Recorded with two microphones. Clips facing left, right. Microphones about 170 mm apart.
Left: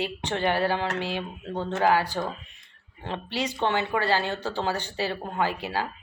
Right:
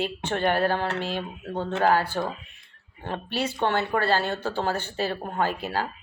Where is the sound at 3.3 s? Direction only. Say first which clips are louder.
Right 1 dB; 15° left (ahead or behind).